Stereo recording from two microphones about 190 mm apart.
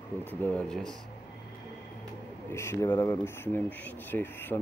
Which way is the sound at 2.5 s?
15° left (ahead or behind).